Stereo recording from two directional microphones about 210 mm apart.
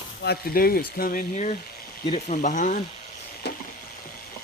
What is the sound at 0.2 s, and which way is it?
Speech, 50° left (ahead or behind).